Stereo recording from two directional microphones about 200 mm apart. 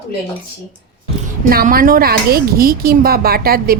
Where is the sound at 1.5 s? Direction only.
45° right (ahead or behind).